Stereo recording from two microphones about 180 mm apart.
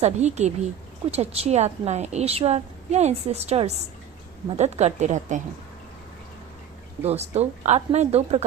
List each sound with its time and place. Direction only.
0.0 s a woman's voice: 40° right (ahead or behind)
7.0 s a woman's voice: 35° right (ahead or behind)